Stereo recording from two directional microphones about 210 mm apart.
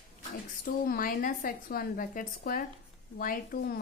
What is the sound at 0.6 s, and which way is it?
A woman's voice, 45° left (ahead or behind).